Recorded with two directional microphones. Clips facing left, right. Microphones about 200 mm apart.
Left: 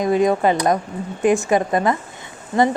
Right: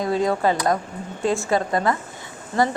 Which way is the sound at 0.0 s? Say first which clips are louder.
Left 4 dB; 20° left (ahead or behind).